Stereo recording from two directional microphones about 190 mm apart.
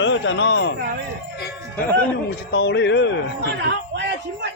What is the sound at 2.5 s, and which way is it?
Speech, 65° left (ahead or behind).